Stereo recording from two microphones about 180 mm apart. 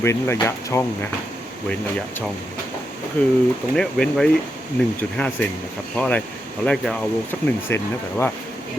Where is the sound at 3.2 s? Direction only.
10° left (ahead or behind).